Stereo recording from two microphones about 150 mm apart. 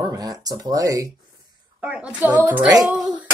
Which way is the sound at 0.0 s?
25° right (ahead or behind).